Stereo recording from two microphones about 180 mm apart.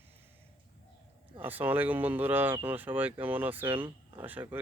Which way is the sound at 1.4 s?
10° right (ahead or behind).